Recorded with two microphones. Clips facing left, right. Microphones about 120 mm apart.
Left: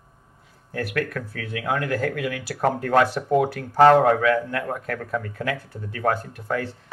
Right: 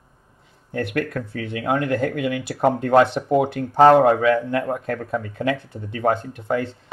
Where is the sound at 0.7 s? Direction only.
25° right (ahead or behind).